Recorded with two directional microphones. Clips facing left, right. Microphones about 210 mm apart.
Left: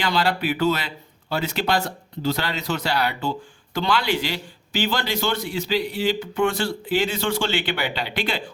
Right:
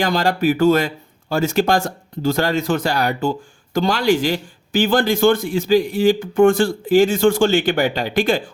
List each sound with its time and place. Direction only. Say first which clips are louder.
0.0 s speech: right 5 dB; 45° right (ahead or behind)